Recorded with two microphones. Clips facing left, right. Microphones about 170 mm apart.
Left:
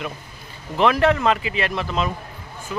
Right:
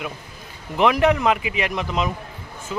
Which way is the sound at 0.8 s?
15° right (ahead or behind).